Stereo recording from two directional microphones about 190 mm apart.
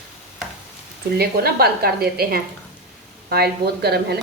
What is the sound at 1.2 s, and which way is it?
A woman's voice, 55° right (ahead or behind).